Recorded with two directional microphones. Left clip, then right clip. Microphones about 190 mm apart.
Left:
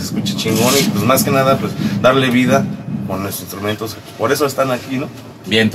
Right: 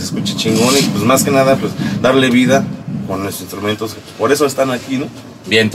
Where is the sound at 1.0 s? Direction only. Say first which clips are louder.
Right 3 dB; 5° right (ahead or behind).